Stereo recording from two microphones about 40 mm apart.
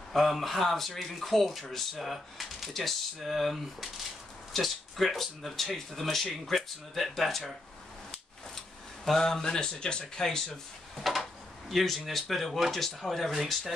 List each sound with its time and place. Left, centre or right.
0.1 s speech: centre
9.0 s speech: centre
10.2 s speech: centre
11.0 s a sound: centre
11.7 s speech: centre